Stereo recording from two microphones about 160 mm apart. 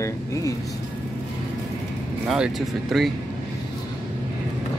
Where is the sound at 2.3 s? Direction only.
Centre (ahead or behind).